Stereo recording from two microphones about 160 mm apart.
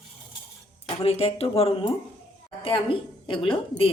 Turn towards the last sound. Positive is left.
turn(degrees=35)  # may be behind; listen again after turning